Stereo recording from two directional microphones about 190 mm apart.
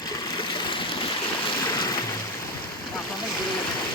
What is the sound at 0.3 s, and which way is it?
Stream, 25° left (ahead or behind).